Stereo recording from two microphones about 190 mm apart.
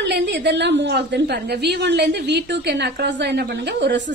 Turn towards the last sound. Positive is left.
turn(degrees=-65)  # may be behind; listen again after turning